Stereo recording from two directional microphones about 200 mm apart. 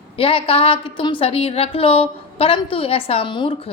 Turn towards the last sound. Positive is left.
turn(degrees=25)  # may be behind; listen again after turning